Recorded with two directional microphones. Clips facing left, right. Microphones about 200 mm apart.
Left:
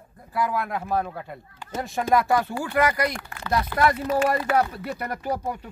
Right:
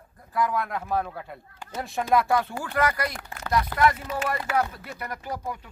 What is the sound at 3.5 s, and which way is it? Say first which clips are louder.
Speech: left 1 dB; 30° left (ahead or behind).